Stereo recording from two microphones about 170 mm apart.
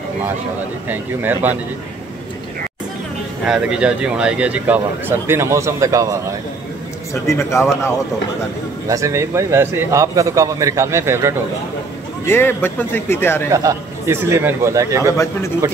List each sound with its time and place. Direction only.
0.8 s a man's voice: 10° right (ahead or behind)
3.4 s a man's voice: 5° right (ahead or behind); by 6.1 s 20° right (ahead or behind)
7.2 s a man's voice: 15° left (ahead or behind)
8.8 s a man's voice: 20° right (ahead or behind)
12.3 s a man's voice: 15° left (ahead or behind)
13.5 s a man's voice: 20° right (ahead or behind)